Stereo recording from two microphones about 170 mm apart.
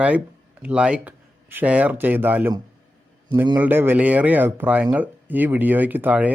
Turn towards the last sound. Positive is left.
turn(degrees=-10)  # may be behind; listen again after turning